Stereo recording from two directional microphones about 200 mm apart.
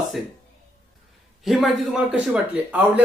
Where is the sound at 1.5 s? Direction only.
Centre (ahead or behind).